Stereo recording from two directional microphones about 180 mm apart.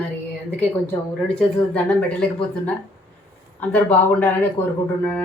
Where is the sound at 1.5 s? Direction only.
5° left (ahead or behind).